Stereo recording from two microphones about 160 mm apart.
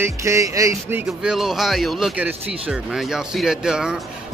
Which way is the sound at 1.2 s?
5° right (ahead or behind).